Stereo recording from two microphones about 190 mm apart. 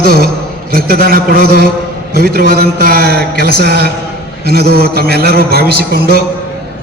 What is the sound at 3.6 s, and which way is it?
A man's voice, 55° right (ahead or behind).